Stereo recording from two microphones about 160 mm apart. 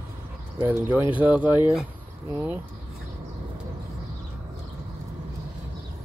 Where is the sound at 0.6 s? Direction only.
10° right (ahead or behind).